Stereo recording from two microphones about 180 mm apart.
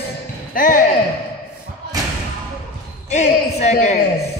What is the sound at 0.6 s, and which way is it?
Speech, 45° left (ahead or behind).